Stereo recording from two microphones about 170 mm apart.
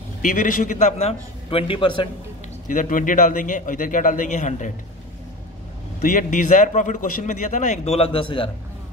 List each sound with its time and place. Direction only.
0.2 s a man's voice: 55° left (ahead or behind); by 2.0 s 30° left (ahead or behind)
2.7 s a man's voice: 50° left (ahead or behind)
6.0 s a man's voice: 50° left (ahead or behind); by 8.5 s 30° left (ahead or behind)